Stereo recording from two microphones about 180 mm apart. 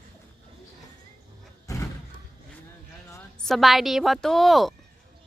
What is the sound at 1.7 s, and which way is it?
Slam, 20° left (ahead or behind).